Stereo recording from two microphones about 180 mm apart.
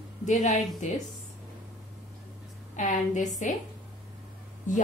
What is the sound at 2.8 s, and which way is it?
Speech, 45° left (ahead or behind).